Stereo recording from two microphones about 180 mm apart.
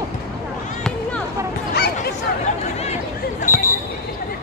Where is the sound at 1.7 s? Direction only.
60° left (ahead or behind).